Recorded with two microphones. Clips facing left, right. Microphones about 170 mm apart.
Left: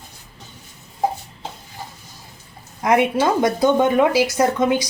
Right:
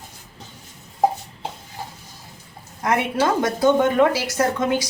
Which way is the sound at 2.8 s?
15° left (ahead or behind).